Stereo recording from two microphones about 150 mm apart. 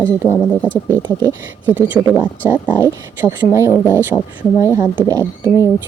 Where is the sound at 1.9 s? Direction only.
10° right (ahead or behind).